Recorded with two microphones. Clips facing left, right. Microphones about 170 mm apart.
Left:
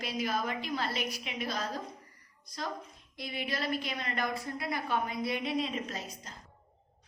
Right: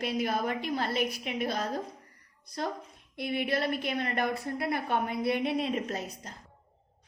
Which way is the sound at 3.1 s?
60° right (ahead or behind).